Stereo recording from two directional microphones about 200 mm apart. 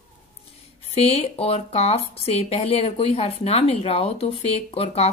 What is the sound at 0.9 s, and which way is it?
Speech, 30° left (ahead or behind).